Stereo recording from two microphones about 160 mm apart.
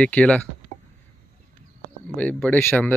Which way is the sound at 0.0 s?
10° left (ahead or behind).